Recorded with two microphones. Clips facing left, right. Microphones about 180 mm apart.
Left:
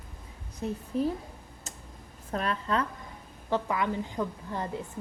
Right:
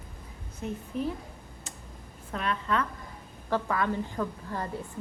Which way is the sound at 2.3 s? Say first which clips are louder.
Even; 40° left (ahead or behind).